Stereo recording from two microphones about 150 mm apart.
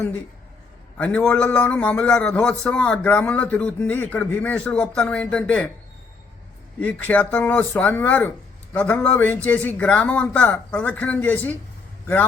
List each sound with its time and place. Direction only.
0.9 s a man's voice: 10° left (ahead or behind)
6.7 s a man's voice: 10° left (ahead or behind)